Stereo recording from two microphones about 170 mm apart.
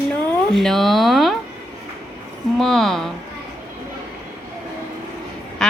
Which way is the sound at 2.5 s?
Centre (ahead or behind).